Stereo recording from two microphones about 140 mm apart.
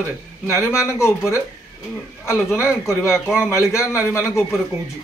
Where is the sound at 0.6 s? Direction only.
5° right (ahead or behind).